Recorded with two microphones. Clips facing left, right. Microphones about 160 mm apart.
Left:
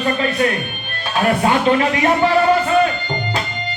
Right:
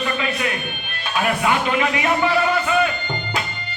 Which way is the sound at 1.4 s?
40° left (ahead or behind).